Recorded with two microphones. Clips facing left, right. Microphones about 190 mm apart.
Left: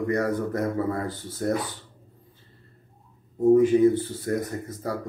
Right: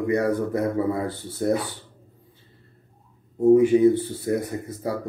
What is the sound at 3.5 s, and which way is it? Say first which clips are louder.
Speech: right 1 dB; 10° right (ahead or behind).